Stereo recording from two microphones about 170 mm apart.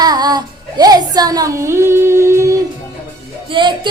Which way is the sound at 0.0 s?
25° right (ahead or behind).